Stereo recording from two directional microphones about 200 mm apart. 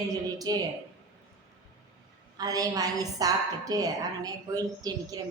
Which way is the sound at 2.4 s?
20° right (ahead or behind).